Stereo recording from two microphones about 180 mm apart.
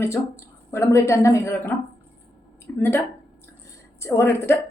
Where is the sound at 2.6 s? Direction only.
10° left (ahead or behind).